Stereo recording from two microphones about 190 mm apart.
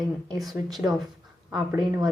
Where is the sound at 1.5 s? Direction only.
20° right (ahead or behind).